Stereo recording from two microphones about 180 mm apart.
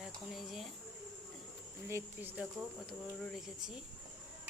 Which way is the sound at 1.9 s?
10° right (ahead or behind).